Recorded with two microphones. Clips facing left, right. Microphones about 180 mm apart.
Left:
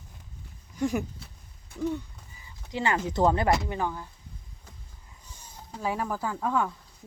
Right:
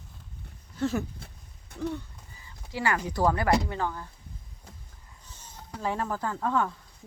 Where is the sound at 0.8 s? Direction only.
15° left (ahead or behind).